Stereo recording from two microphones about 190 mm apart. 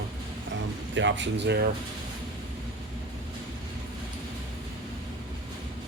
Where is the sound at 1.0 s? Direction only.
75° right (ahead or behind).